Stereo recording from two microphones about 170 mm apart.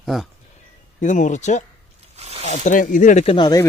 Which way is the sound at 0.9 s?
45° left (ahead or behind).